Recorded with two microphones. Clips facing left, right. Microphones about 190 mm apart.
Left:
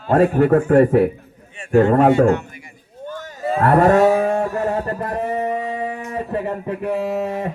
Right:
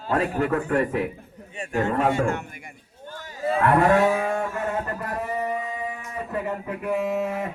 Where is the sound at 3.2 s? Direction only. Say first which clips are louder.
Left 3 dB; 45° left (ahead or behind).